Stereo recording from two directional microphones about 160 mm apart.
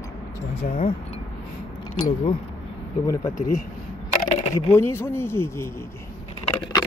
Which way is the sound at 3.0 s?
20° left (ahead or behind).